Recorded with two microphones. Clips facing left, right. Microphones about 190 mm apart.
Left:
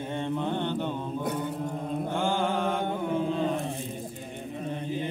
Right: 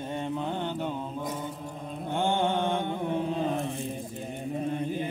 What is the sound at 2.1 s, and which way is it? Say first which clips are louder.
Mantra: right 3 dB; 20° right (ahead or behind).